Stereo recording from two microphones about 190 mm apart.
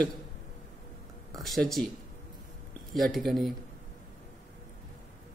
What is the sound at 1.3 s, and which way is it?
Speech, centre (ahead or behind).